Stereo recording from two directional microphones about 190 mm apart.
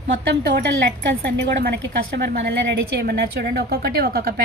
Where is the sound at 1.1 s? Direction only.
55° right (ahead or behind).